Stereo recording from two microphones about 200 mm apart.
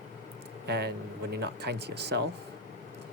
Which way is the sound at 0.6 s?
55° right (ahead or behind).